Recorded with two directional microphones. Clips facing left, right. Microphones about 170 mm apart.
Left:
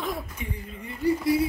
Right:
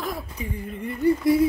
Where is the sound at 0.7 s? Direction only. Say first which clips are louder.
Right 4 dB; 55° right (ahead or behind).